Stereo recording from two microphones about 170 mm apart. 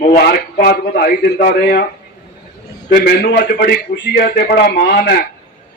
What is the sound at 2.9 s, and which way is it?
A man's voice, 65° left (ahead or behind).